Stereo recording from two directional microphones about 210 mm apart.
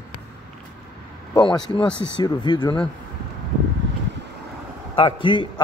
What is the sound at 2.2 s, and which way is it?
Speech, 20° left (ahead or behind).